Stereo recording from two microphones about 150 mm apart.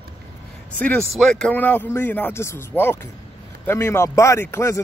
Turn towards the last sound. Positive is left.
turn(degrees=15)  # may be behind; listen again after turning